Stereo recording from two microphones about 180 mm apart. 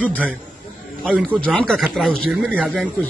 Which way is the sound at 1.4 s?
5° left (ahead or behind).